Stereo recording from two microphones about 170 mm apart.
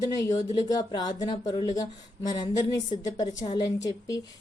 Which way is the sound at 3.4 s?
25° left (ahead or behind).